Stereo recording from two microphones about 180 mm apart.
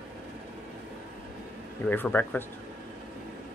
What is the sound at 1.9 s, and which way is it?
Speech, 10° left (ahead or behind).